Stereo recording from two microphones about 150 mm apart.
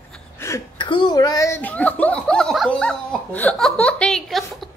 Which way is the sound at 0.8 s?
30° left (ahead or behind).